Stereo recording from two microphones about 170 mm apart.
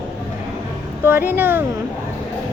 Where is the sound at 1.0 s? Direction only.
10° right (ahead or behind).